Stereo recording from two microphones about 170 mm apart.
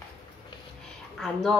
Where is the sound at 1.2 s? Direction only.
Centre (ahead or behind).